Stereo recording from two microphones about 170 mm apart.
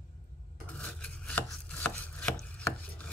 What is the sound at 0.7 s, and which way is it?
Chopping, 10° left (ahead or behind).